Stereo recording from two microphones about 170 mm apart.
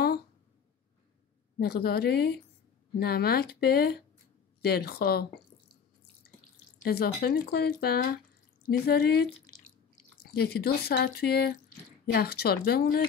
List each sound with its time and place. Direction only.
1.6 s speech: 65° left (ahead or behind)
6.8 s speech: 70° left (ahead or behind)